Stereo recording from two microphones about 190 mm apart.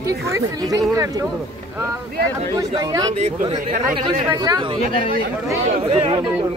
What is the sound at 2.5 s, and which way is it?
Speech, 20° right (ahead or behind).